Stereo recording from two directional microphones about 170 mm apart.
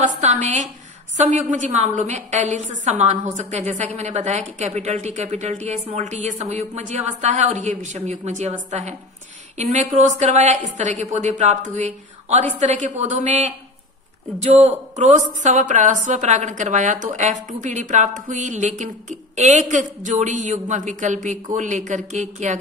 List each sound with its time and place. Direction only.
0.2 s a woman's voice: 45° right (ahead or behind)